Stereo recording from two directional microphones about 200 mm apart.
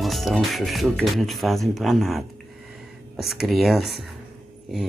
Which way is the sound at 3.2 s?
Centre (ahead or behind).